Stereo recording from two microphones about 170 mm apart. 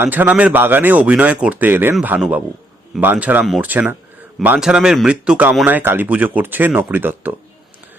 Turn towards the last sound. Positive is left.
turn(degrees=-10)  # may be behind; listen again after turning